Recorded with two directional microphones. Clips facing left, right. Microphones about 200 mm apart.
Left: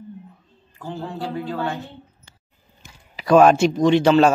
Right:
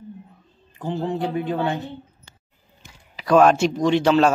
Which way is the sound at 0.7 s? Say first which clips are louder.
Right 5 dB; 20° right (ahead or behind).